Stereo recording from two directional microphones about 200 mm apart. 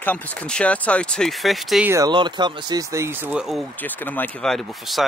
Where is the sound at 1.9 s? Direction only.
20° right (ahead or behind).